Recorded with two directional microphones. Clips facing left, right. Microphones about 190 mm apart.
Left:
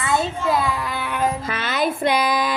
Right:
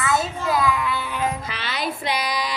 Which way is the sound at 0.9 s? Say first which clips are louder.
Left 2 dB; 55° left (ahead or behind).